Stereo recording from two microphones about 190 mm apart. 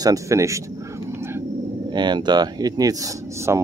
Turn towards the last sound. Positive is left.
turn(degrees=-15)  # may be behind; listen again after turning